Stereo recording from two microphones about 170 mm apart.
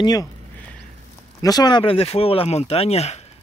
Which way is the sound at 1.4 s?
25° left (ahead or behind).